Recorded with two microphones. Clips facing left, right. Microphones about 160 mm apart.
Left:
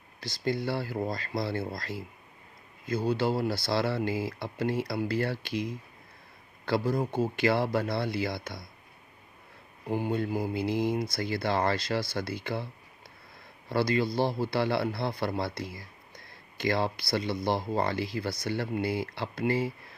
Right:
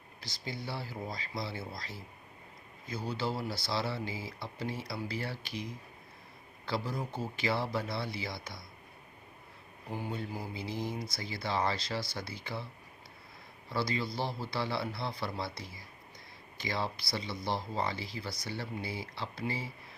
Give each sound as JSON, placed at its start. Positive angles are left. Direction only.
{"t": 0.3, "sound": "speech", "side_deg": 65}
{"t": 6.7, "sound": "speech", "side_deg": 55}
{"t": 9.9, "sound": "speech", "side_deg": 65}
{"t": 13.7, "sound": "speech", "side_deg": 60}